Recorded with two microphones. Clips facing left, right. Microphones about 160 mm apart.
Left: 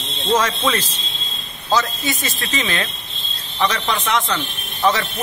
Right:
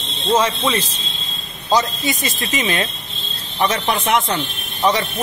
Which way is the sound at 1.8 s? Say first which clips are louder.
Right 1 dB; 20° right (ahead or behind).